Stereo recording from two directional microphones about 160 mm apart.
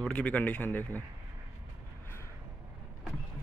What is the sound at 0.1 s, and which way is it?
Speech, 10° left (ahead or behind).